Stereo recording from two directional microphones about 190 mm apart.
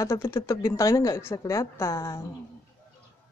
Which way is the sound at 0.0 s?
15° left (ahead or behind).